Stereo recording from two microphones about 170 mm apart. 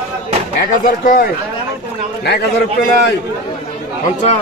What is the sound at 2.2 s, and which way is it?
Speech, 75° left (ahead or behind).